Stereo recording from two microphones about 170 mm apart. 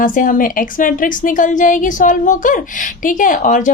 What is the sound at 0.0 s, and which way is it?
A woman's voice, 50° left (ahead or behind).